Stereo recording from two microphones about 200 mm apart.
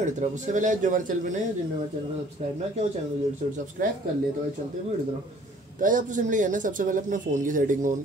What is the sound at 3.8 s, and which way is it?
Speech, 45° right (ahead or behind).